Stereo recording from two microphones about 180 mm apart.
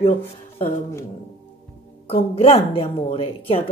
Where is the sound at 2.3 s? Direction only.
35° left (ahead or behind).